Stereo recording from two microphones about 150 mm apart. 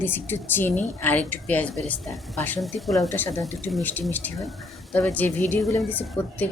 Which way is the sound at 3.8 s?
10° left (ahead or behind).